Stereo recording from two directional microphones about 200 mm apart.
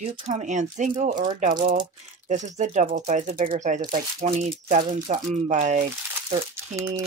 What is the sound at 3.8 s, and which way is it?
Speech, 25° right (ahead or behind).